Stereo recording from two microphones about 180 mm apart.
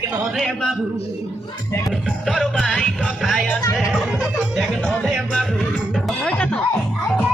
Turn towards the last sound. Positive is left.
turn(degrees=5)  # may be behind; listen again after turning